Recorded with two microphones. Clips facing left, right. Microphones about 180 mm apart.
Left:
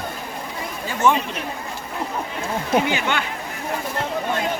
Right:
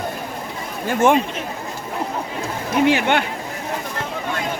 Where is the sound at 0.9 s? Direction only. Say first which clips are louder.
Right 3 dB; 50° right (ahead or behind).